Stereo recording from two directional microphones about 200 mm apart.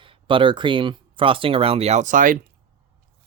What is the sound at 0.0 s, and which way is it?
Speech, 25° right (ahead or behind).